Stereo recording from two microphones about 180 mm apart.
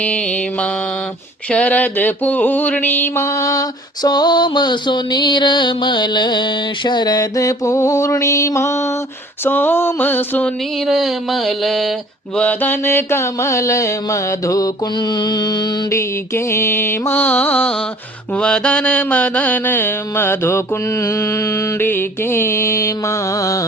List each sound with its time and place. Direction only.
0.0 s mantra: 5° left (ahead or behind)
9.4 s a sound: 10° left (ahead or behind)
12.4 s mantra: 10° left (ahead or behind)